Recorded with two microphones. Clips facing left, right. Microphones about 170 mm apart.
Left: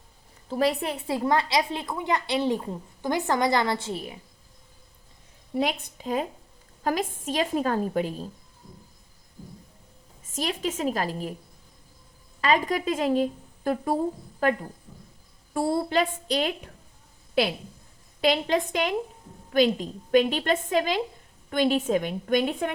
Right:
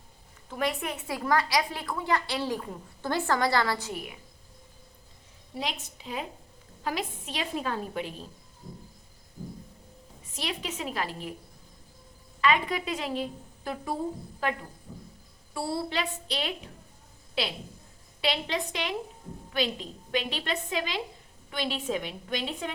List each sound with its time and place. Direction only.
0.4 s a woman's voice: 35° left (ahead or behind)
5.5 s a woman's voice: 55° left (ahead or behind)
10.3 s a woman's voice: 45° left (ahead or behind)
12.4 s a woman's voice: 40° left (ahead or behind)
15.5 s a woman's voice: 45° left (ahead or behind)
18.2 s a woman's voice: 45° left (ahead or behind)